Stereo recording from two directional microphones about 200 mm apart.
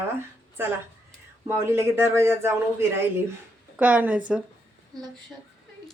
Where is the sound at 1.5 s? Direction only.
10° right (ahead or behind).